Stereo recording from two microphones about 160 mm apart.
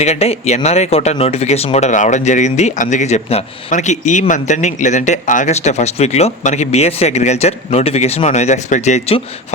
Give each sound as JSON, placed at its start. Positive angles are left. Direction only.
{"t": 0.0, "sound": "speech", "side_deg": 40}